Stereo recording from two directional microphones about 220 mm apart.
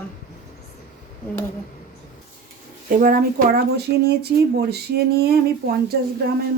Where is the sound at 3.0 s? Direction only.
40° right (ahead or behind).